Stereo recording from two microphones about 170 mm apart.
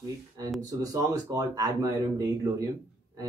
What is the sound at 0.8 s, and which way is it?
Speech, 20° right (ahead or behind).